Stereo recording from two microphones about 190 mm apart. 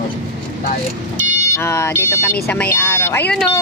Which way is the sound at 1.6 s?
15° left (ahead or behind).